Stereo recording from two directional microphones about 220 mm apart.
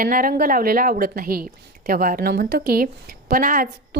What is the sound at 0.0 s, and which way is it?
A woman's voice, 40° right (ahead or behind).